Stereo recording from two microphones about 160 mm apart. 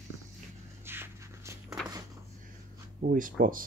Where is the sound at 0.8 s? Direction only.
15° right (ahead or behind).